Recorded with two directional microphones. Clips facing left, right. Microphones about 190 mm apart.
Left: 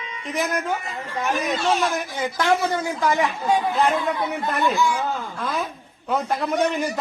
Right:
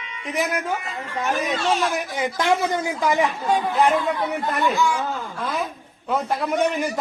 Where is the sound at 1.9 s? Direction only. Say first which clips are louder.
Right 1 dB; 15° right (ahead or behind).